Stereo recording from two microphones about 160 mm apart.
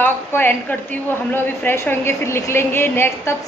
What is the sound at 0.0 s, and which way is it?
A woman's voice, 15° left (ahead or behind).